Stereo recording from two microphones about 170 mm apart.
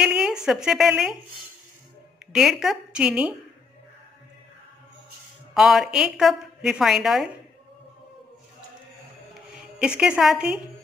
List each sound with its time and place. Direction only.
0.0 s a woman's voice: 5° right (ahead or behind)
2.3 s a woman's voice: centre (ahead or behind)
5.5 s a woman's voice: centre (ahead or behind)
9.8 s a woman's voice: 5° right (ahead or behind)